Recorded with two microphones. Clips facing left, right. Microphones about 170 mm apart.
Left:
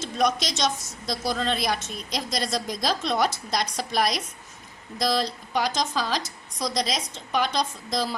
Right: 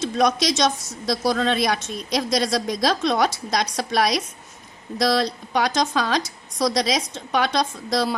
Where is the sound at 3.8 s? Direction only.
90° right.